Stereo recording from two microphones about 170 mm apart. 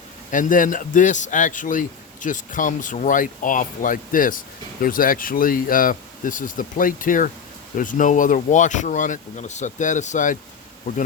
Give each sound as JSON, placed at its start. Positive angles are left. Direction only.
{"t": 0.3, "sound": "a man's voice", "side_deg": 50}